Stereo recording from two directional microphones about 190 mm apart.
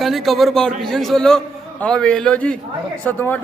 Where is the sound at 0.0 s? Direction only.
Centre (ahead or behind).